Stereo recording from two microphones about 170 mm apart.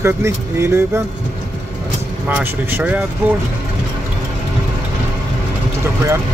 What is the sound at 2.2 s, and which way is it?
Speech, 10° right (ahead or behind).